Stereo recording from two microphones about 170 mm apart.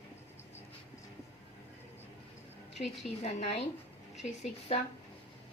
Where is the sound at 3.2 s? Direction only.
40° left (ahead or behind).